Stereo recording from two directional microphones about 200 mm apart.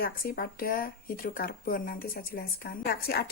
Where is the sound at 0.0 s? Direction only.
45° left (ahead or behind).